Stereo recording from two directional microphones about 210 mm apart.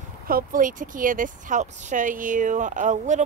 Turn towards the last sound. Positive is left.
turn(degrees=-35)  # may be behind; listen again after turning